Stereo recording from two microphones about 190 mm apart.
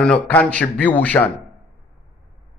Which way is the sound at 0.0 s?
5° left (ahead or behind).